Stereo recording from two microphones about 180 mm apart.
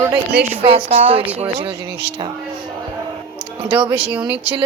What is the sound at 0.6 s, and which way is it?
A woman's voice, 30° right (ahead or behind).